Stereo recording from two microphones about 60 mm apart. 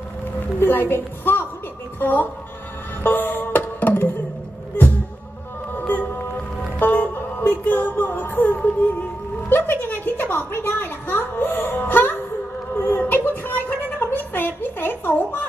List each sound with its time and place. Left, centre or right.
0.6 s a woman's voice: left
3.0 s music: left
5.8 s a sound: left
7.6 s female singing: left
9.5 s a woman's voice: left